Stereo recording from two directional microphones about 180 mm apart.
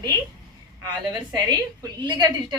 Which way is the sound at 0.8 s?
20° right (ahead or behind).